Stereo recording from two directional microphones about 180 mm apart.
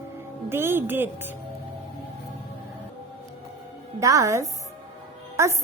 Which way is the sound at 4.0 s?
20° right (ahead or behind).